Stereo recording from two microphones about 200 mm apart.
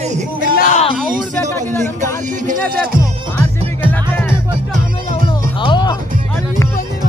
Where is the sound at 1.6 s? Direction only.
10° left (ahead or behind).